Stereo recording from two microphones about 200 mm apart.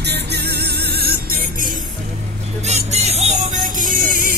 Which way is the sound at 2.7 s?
35° right (ahead or behind).